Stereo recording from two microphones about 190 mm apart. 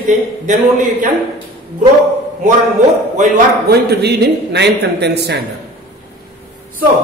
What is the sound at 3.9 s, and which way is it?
A woman's voice, 60° right (ahead or behind).